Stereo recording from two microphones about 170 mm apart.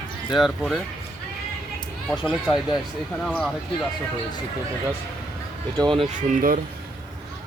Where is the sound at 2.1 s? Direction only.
5° left (ahead or behind).